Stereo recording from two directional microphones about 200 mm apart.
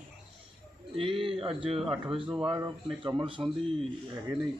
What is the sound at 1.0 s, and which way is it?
Speech, 25° right (ahead or behind).